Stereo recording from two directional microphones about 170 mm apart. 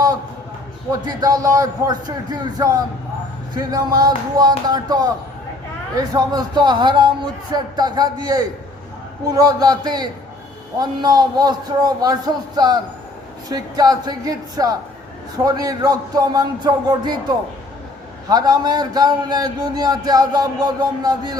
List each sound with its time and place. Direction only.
0.9 s a man's voice: 20° right (ahead or behind)
18.3 s a man's voice: 25° right (ahead or behind)